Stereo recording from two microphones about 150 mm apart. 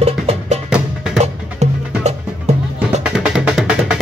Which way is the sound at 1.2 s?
45° right (ahead or behind).